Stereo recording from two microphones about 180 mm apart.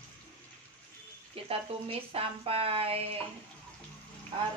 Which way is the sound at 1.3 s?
30° right (ahead or behind).